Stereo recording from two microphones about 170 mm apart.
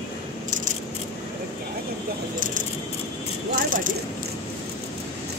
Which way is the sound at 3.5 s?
50° right (ahead or behind).